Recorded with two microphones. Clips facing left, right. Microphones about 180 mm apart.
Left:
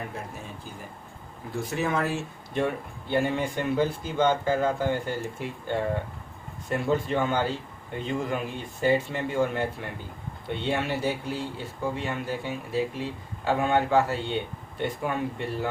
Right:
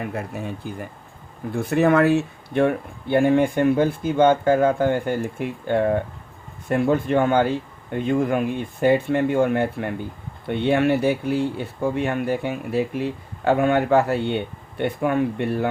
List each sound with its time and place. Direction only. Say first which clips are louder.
0.1 s speech: right 9 dB; 65° right (ahead or behind)